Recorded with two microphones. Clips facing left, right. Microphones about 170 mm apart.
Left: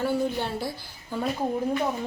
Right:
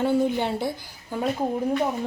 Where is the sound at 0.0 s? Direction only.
20° right (ahead or behind).